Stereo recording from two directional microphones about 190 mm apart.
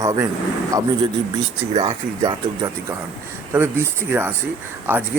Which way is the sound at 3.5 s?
15° right (ahead or behind).